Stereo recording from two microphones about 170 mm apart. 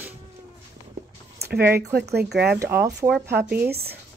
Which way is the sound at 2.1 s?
75° right (ahead or behind).